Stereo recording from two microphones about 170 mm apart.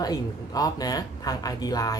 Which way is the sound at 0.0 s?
20° left (ahead or behind).